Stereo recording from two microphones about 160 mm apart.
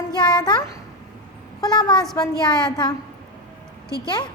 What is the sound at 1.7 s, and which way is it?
A woman's voice, 25° left (ahead or behind).